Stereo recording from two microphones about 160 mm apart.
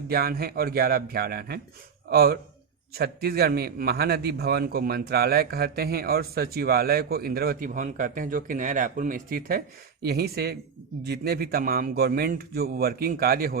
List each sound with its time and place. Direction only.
0.1 s a man's voice: 75° right (ahead or behind)